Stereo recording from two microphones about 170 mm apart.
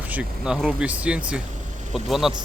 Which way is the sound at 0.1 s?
5° right (ahead or behind).